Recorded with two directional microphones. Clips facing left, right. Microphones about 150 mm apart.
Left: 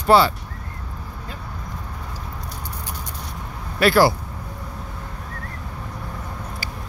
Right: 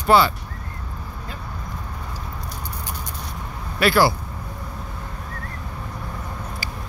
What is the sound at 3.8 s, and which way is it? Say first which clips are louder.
Speech: left 2 dB; 40° left (ahead or behind).